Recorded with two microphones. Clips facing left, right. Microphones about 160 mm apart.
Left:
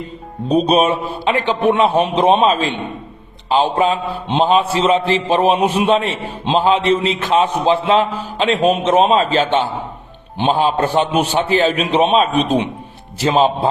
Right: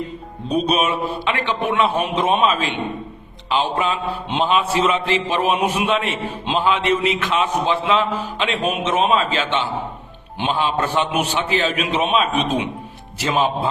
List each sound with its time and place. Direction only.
0.7 s a man's voice: 30° left (ahead or behind)